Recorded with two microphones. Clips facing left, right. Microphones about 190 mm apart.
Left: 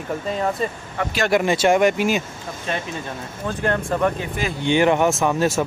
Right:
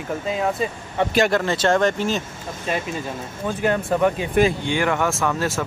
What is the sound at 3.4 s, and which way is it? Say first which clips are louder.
Speech: right 1 dB; 10° right (ahead or behind).